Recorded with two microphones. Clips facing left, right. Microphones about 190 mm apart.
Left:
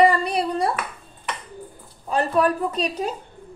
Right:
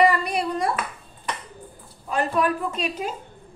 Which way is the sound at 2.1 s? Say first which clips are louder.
Left 3 dB; 35° left (ahead or behind).